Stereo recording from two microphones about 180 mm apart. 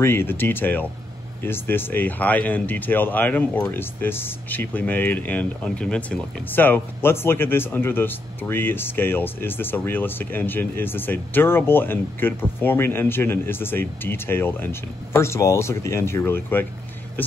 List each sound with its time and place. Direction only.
0.0 s speech: 15° left (ahead or behind)